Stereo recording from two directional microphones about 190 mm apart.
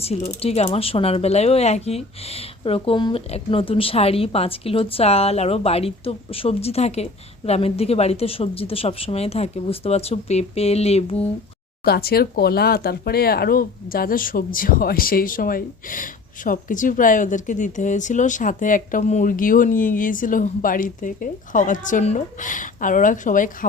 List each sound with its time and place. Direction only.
0.3 s speech: 30° left (ahead or behind)
11.9 s speech: 55° left (ahead or behind)